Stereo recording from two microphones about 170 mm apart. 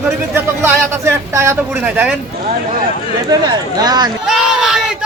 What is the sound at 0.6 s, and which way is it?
A man's voice, 15° right (ahead or behind).